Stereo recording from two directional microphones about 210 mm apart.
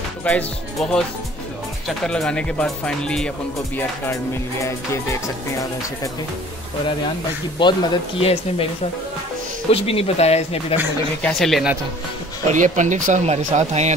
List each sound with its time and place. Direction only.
0.2 s speech: 5° left (ahead or behind)
3.7 s music: 10° left (ahead or behind)
7.5 s speech: 20° left (ahead or behind)
9.7 s speech: 25° left (ahead or behind)
11.2 s speech: centre (ahead or behind)
12.5 s speech: 35° right (ahead or behind)